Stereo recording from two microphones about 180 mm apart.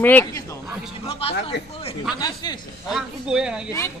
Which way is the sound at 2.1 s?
20° left (ahead or behind).